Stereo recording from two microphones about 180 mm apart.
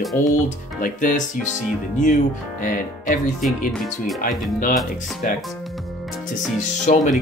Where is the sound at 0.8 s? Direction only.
50° left (ahead or behind).